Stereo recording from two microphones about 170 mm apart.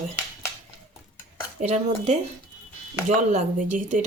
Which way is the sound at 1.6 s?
40° right (ahead or behind).